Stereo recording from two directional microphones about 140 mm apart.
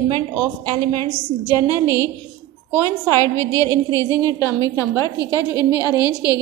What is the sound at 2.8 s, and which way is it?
A woman's voice, 20° left (ahead or behind).